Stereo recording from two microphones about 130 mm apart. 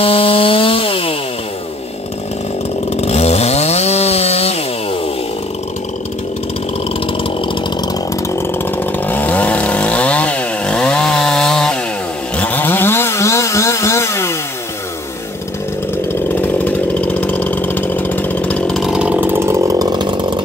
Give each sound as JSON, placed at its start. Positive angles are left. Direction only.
{"t": 0.0, "sound": "chainsaw", "side_deg": 45}
{"t": 3.0, "sound": "chainsaw", "side_deg": 55}
{"t": 8.4, "sound": "chainsaw", "side_deg": 15}
{"t": 15.9, "sound": "chainsaw", "side_deg": 15}